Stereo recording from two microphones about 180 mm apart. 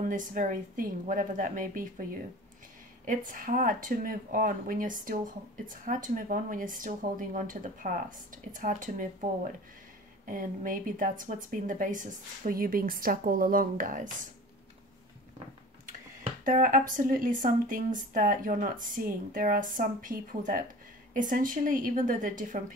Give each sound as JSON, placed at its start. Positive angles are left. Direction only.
{"t": 0.1, "sound": "speech", "side_deg": -45}
{"t": 3.1, "sound": "speech", "side_deg": -50}
{"t": 16.4, "sound": "speech", "side_deg": -50}